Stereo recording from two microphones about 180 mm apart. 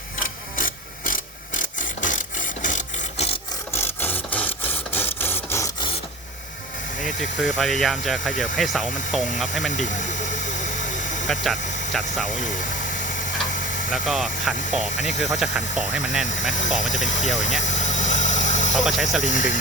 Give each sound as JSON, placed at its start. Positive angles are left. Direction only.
{"t": 0.2, "sound": "a sound", "side_deg": 50}
{"t": 3.7, "sound": "rub", "side_deg": 10}
{"t": 7.0, "sound": "speech", "side_deg": 0}
{"t": 11.3, "sound": "speech", "side_deg": 0}
{"t": 13.9, "sound": "speech", "side_deg": 0}
{"t": 17.6, "sound": "vehicle", "side_deg": 40}
{"t": 18.8, "sound": "speech", "side_deg": 0}
{"t": 19.2, "sound": "speech", "side_deg": 45}